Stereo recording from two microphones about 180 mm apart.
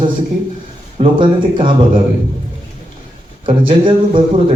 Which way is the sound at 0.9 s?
25° right (ahead or behind).